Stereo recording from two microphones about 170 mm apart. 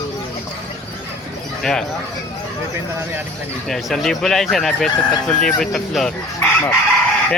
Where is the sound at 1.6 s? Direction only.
5° left (ahead or behind).